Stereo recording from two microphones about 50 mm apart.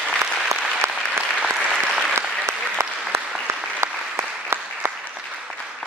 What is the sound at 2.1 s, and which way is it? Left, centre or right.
Applause, right.